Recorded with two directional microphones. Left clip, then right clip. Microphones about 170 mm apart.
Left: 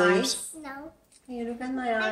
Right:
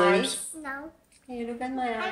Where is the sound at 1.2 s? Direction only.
70° left (ahead or behind).